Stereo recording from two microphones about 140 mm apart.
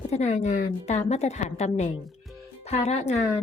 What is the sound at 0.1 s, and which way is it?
A woman's voice, 55° left (ahead or behind).